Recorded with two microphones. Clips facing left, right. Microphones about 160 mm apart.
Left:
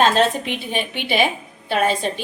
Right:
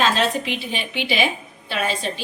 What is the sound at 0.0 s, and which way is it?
A woman's voice, 50° left (ahead or behind).